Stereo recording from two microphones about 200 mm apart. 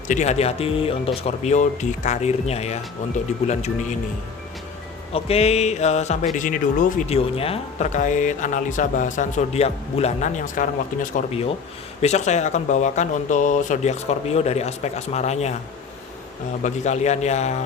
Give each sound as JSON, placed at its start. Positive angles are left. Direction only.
{"t": 0.1, "sound": "speech", "side_deg": 35}
{"t": 5.1, "sound": "speech", "side_deg": 30}
{"t": 7.2, "sound": "speech", "side_deg": 30}
{"t": 16.6, "sound": "speech", "side_deg": 35}